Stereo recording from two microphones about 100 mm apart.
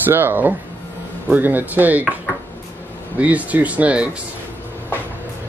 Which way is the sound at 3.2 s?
15° right (ahead or behind).